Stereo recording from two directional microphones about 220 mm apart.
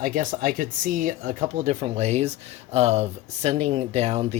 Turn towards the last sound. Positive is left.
turn(degrees=-30)  # may be behind; listen again after turning